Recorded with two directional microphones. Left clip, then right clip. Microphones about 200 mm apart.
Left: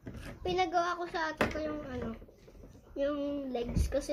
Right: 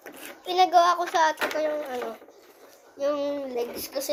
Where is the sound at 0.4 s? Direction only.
15° left (ahead or behind).